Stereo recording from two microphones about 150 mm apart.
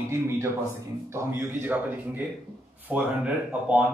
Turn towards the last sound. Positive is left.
turn(degrees=-10)  # may be behind; listen again after turning